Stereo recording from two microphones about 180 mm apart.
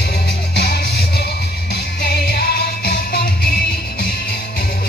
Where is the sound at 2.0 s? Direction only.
65° left (ahead or behind).